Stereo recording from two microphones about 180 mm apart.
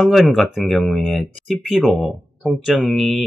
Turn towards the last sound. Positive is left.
turn(degrees=0)  # may be behind; listen again after turning